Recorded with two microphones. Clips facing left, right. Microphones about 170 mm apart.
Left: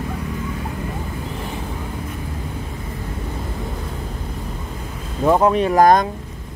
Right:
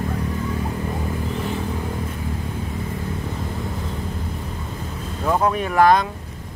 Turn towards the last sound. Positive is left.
turn(degrees=45)  # may be behind; listen again after turning